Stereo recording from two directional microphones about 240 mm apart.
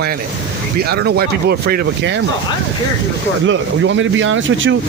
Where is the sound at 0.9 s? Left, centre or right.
Right.